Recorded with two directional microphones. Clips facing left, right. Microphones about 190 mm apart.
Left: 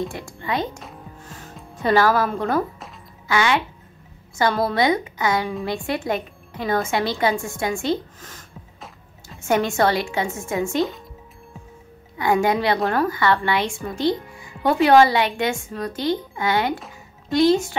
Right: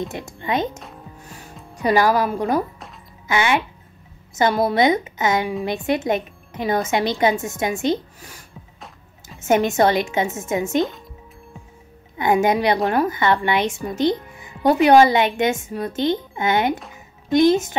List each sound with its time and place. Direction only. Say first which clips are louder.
0.1 s a woman's voice: right 3 dB; 20° right (ahead or behind)
1.2 s music: even; 15° right (ahead or behind)
3.3 s a child's voice: right 1 dB; 20° right (ahead or behind)
9.4 s a woman's voice: right 3 dB; 20° right (ahead or behind)
12.2 s a woman's voice: right 2 dB; 20° right (ahead or behind)